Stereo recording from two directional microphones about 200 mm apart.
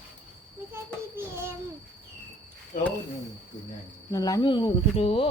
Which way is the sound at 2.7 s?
45° left (ahead or behind).